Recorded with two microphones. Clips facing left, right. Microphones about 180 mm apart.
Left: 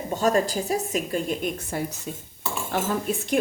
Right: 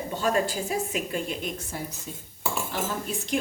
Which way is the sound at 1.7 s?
65° left (ahead or behind).